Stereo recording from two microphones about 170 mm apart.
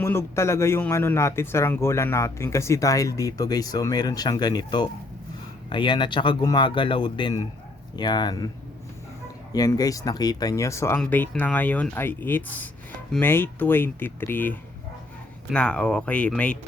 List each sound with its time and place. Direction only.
0.0 s speech: 15° left (ahead or behind)
9.5 s speech: 20° left (ahead or behind)